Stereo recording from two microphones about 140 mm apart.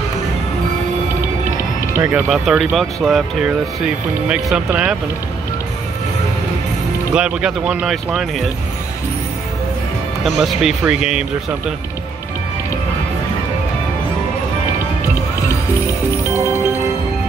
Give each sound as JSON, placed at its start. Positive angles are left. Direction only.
{"t": 2.0, "sound": "speech", "side_deg": -15}
{"t": 2.3, "sound": "speech", "side_deg": -5}
{"t": 7.2, "sound": "speech", "side_deg": -5}
{"t": 10.2, "sound": "speech", "side_deg": 0}